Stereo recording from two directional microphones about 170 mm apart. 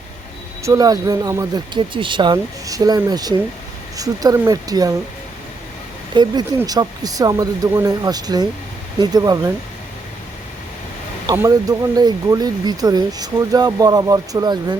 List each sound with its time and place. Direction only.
0.6 s speech: 20° right (ahead or behind)
6.1 s speech: 25° right (ahead or behind)
11.3 s speech: 20° right (ahead or behind)